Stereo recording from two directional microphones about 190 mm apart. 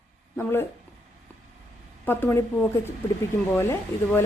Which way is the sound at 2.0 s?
10° left (ahead or behind).